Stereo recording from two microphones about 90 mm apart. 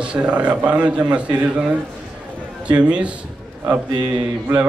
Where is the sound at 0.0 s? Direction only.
10° right (ahead or behind).